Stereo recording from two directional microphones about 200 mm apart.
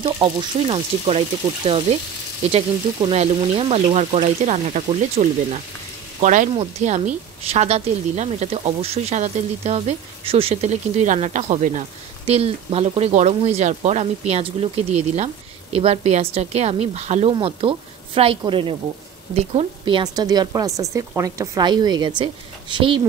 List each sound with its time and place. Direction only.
0.2 s a woman's voice: 30° right (ahead or behind)